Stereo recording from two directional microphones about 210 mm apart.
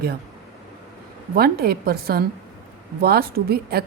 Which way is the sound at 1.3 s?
45° right (ahead or behind).